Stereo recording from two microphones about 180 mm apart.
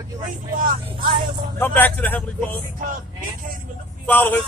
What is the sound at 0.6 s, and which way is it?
Speech, 50° right (ahead or behind).